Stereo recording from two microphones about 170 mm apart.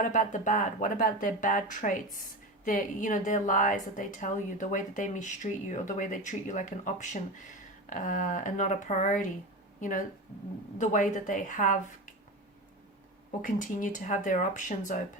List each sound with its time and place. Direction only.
0.0 s a woman's voice: 50° left (ahead or behind)
10.8 s a woman's voice: 50° left (ahead or behind)
13.4 s a woman's voice: 50° left (ahead or behind)